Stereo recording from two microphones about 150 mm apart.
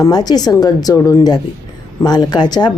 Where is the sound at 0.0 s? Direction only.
25° left (ahead or behind).